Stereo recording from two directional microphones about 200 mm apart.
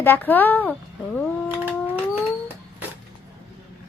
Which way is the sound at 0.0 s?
10° left (ahead or behind).